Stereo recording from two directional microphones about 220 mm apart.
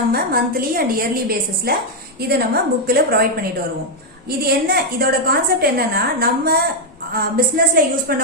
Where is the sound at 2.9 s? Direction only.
45° right (ahead or behind).